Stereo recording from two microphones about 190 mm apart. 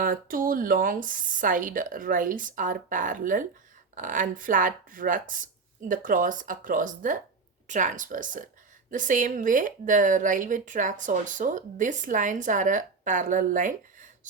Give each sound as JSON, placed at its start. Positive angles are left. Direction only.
{"t": 0.0, "sound": "a woman's voice", "side_deg": -45}